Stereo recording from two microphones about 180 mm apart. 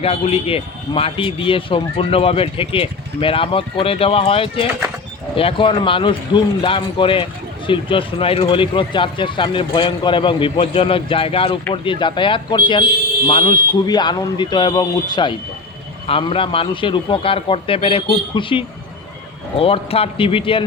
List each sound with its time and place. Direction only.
0.0 s speech: 35° left (ahead or behind)